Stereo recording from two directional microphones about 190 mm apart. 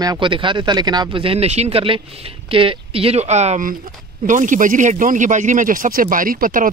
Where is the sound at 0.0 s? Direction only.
25° right (ahead or behind).